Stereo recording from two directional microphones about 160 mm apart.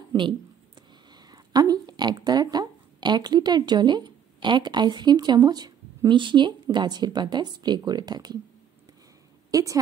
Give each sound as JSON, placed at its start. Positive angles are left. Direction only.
{"t": 0.1, "sound": "speech", "side_deg": -20}
{"t": 9.5, "sound": "a woman's voice", "side_deg": -20}